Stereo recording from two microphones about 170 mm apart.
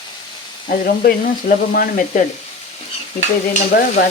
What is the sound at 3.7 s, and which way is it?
Frying, 60° left (ahead or behind).